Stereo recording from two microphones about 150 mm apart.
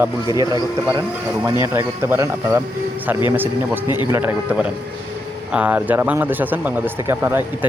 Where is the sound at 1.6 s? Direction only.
15° right (ahead or behind).